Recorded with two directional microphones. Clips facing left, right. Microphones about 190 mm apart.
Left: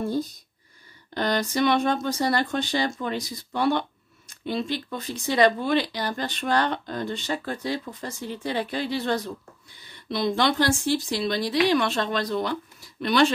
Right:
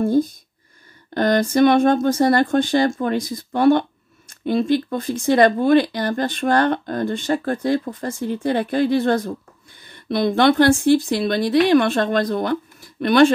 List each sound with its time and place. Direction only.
0.0 s speech: 50° right (ahead or behind)